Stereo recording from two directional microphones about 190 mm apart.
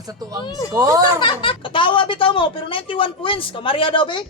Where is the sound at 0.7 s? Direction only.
20° right (ahead or behind).